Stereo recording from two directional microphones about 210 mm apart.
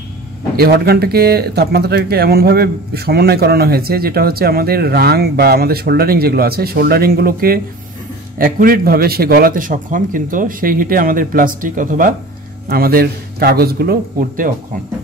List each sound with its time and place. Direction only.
0.6 s speech: 45° right (ahead or behind)